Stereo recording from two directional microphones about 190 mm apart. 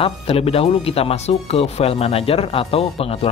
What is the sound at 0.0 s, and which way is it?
Speech, 30° left (ahead or behind).